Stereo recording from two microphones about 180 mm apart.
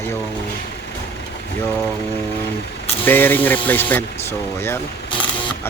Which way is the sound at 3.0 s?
10° left (ahead or behind).